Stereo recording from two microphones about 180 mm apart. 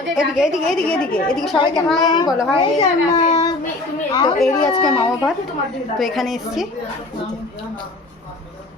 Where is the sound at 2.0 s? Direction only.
20° left (ahead or behind).